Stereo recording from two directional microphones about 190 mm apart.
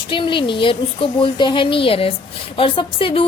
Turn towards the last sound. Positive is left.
turn(degrees=30)  # may be behind; listen again after turning